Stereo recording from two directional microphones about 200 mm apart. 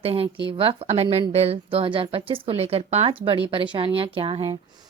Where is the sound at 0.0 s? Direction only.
30° right (ahead or behind).